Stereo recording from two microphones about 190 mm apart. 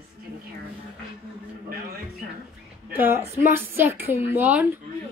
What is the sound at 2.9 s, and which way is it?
Speech, 10° right (ahead or behind).